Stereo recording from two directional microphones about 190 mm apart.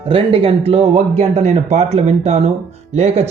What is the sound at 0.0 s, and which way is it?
A man's voice, 30° right (ahead or behind).